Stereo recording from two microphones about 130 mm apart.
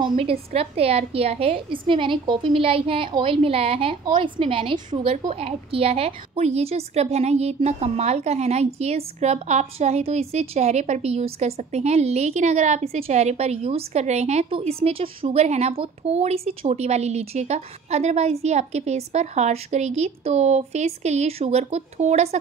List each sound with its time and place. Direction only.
0.2 s a woman's voice: 50° right (ahead or behind)